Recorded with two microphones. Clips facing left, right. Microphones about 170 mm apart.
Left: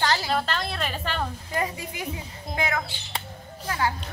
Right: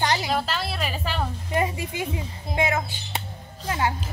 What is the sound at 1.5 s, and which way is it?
A woman's voice, 25° right (ahead or behind).